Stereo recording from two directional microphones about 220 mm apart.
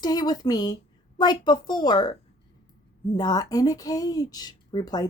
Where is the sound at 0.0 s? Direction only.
20° left (ahead or behind).